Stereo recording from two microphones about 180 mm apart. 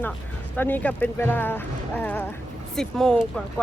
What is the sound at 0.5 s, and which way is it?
Speech, 10° left (ahead or behind).